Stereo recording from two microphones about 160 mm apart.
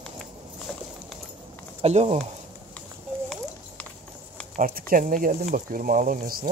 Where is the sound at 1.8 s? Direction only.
40° right (ahead or behind).